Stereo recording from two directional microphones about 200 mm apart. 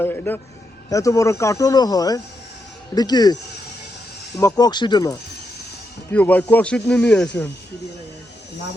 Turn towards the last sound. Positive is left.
turn(degrees=5)  # may be behind; listen again after turning